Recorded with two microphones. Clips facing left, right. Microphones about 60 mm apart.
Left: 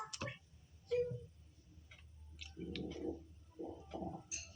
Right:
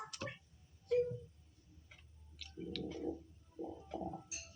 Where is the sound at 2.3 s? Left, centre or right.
Left.